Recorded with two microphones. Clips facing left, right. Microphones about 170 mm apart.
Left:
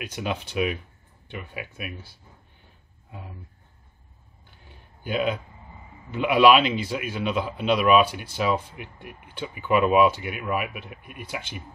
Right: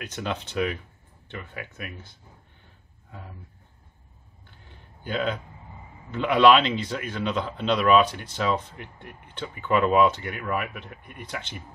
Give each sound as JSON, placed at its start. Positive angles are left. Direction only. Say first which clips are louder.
{"t": 0.0, "sound": "a man's voice", "louder": "left 1 dB", "side_deg": 10}
{"t": 4.6, "sound": "a sound", "louder": "left 2 dB", "side_deg": 10}
{"t": 6.1, "sound": "a man's voice", "louder": "left 1 dB", "side_deg": 10}